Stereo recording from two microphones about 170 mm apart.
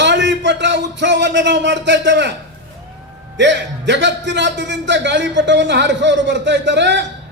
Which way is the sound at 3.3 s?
90° right.